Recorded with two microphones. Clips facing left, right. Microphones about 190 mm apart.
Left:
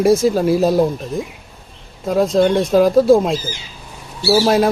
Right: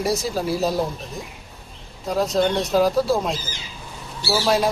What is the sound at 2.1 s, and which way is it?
Speech, 55° left (ahead or behind).